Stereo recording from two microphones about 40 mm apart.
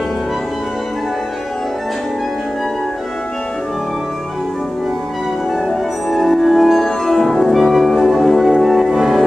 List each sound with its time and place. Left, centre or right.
6.0 s music: centre